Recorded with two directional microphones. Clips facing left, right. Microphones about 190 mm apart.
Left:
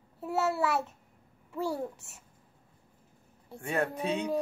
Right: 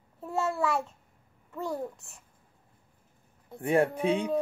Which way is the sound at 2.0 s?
75° left (ahead or behind).